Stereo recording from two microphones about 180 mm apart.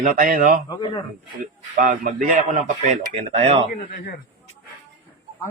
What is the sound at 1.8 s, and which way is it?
Speech, 50° right (ahead or behind).